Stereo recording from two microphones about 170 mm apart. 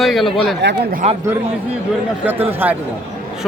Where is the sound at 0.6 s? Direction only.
90° right.